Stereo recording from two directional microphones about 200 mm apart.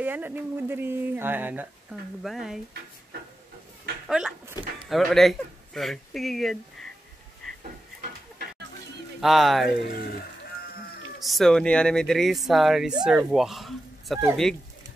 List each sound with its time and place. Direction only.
0.0 s speech: 10° right (ahead or behind)
4.1 s a sound: 5° right (ahead or behind)
4.8 s speech: centre (ahead or behind)
7.4 s a sound: centre (ahead or behind)
9.2 s speech: centre (ahead or behind)
9.8 s speech: 50° left (ahead or behind)
11.2 s speech: centre (ahead or behind)